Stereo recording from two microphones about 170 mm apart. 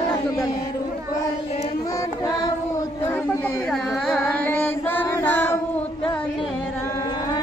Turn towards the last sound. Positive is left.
turn(degrees=10)  # may be behind; listen again after turning